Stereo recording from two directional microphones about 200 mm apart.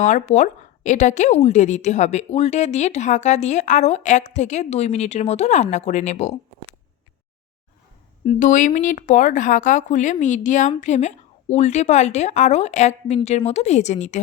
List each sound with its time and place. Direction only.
0.0 s a woman's voice: 35° left (ahead or behind)
8.2 s a woman's voice: 35° left (ahead or behind)